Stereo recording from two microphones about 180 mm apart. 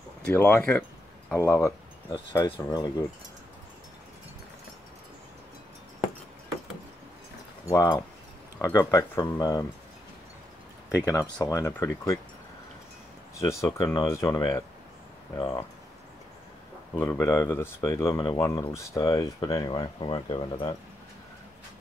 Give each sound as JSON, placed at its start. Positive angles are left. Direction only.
{"t": 0.2, "sound": "speech", "side_deg": 15}
{"t": 2.0, "sound": "speech", "side_deg": 25}
{"t": 7.6, "sound": "speech", "side_deg": 20}
{"t": 11.1, "sound": "speech", "side_deg": 20}
{"t": 13.4, "sound": "speech", "side_deg": 15}
{"t": 17.0, "sound": "speech", "side_deg": 15}